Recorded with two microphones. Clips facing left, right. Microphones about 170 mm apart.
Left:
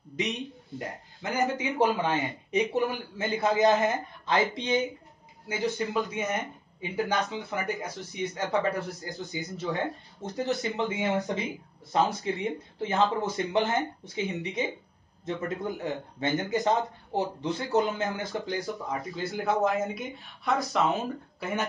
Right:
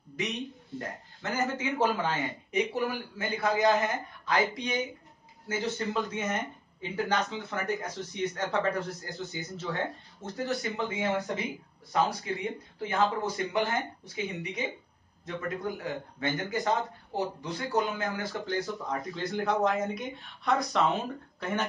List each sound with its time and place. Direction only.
0.7 s a man's voice: 15° left (ahead or behind)
5.5 s a man's voice: 10° left (ahead or behind)
18.9 s speech: 5° left (ahead or behind)